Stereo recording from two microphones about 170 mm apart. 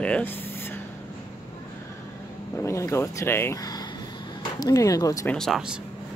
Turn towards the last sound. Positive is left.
turn(degrees=0)  # may be behind; listen again after turning